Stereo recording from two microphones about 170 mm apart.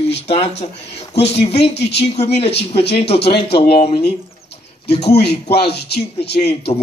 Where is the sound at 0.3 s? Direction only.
40° left (ahead or behind).